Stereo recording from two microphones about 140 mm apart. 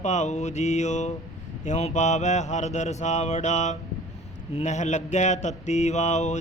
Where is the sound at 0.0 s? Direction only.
55° left (ahead or behind).